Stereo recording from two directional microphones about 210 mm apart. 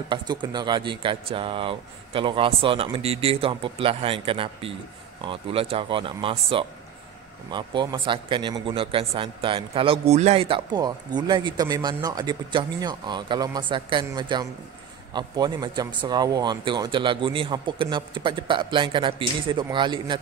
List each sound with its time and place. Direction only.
0.1 s a man's voice: 20° right (ahead or behind)